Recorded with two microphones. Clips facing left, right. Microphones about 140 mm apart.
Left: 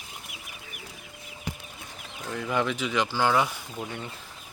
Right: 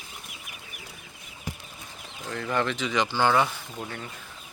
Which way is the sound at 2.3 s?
10° left (ahead or behind).